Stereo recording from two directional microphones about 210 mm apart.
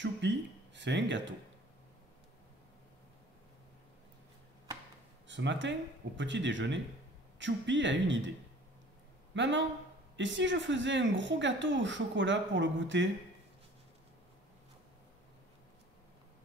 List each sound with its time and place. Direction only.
0.0 s speech: 60° right (ahead or behind)
5.3 s speech: 60° right (ahead or behind)
9.3 s speech: 60° right (ahead or behind)